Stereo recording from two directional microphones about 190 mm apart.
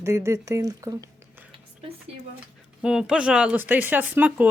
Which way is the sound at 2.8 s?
5° right (ahead or behind).